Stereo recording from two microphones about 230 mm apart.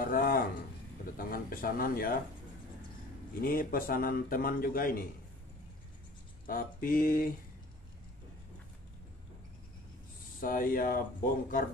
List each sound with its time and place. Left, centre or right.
0.0 s a sound: left
1.1 s a man's voice: left
3.3 s a man's voice: left
6.4 s a man's voice: left
10.4 s a man's voice: left